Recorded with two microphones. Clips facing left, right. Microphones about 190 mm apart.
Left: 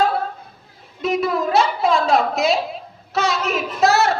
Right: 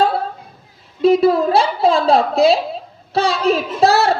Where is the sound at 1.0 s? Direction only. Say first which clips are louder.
Right 8 dB; 30° right (ahead or behind).